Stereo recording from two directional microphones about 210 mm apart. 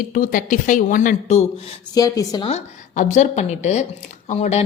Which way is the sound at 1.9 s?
15° left (ahead or behind).